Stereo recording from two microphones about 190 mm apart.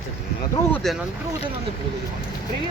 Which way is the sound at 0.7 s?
Centre (ahead or behind).